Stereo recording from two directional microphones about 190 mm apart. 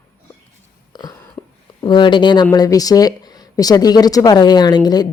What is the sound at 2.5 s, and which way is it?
Speech, 20° left (ahead or behind).